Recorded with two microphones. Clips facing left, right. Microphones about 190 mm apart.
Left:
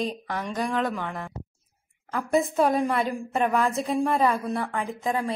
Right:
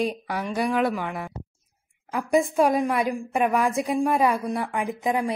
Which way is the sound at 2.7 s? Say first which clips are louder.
Right 1 dB; 10° right (ahead or behind).